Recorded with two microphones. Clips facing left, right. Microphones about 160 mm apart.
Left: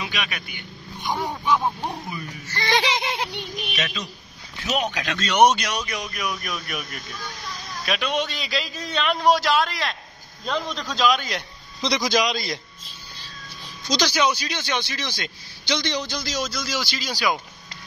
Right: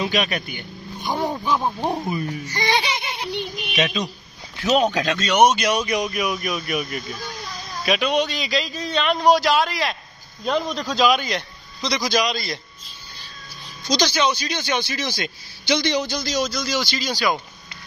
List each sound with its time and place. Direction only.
0.0 s speech: 40° right (ahead or behind)
2.4 s a man's voice: 15° right (ahead or behind)
2.8 s a sound: 90° left
3.7 s a man's voice: 15° right (ahead or behind)
4.6 s speech: 30° right (ahead or behind)
5.2 s a man's voice: 10° right (ahead or behind)
12.1 s a man's voice: 20° left (ahead or behind)
14.0 s a man's voice: 5° left (ahead or behind)